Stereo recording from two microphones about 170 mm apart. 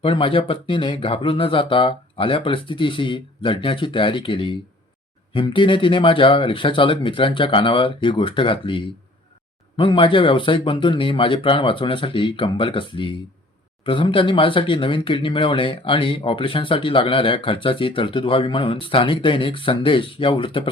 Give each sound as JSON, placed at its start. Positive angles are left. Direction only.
{"t": 0.0, "sound": "speech", "side_deg": 30}